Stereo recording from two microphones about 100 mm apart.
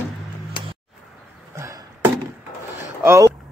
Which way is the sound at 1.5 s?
35° right (ahead or behind).